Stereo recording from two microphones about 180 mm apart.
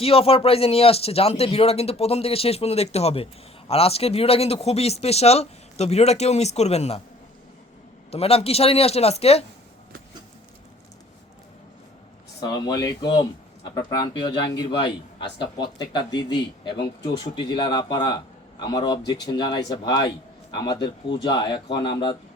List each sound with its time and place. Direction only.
0.0 s speech: 30° left (ahead or behind)
8.1 s speech: 35° left (ahead or behind)
12.4 s a man's voice: 20° left (ahead or behind)